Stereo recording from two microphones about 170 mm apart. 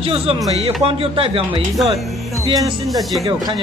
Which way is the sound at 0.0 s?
35° right (ahead or behind).